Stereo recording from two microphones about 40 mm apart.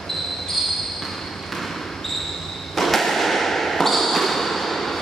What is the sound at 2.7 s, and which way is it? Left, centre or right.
Basketball bounce, centre.